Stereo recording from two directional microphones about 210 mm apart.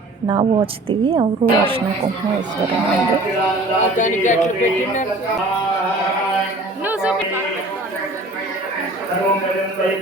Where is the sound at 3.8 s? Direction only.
35° left (ahead or behind).